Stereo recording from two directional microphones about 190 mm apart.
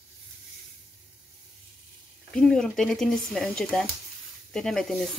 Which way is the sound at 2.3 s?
5° left (ahead or behind).